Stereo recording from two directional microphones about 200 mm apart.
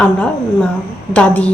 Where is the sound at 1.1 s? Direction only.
5° left (ahead or behind).